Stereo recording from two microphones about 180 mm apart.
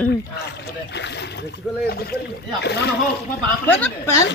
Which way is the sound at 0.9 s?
70° left (ahead or behind).